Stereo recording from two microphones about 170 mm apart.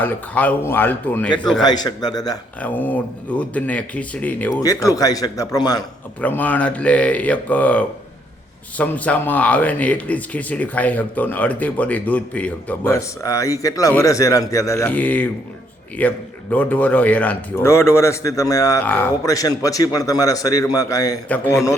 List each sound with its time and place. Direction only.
0.0 s a man's voice: 10° left (ahead or behind)
1.6 s a man's voice: 25° left (ahead or behind)
2.6 s speech: 10° left (ahead or behind)
6.2 s a man's voice: 10° left (ahead or behind)
21.2 s speech: 10° left (ahead or behind)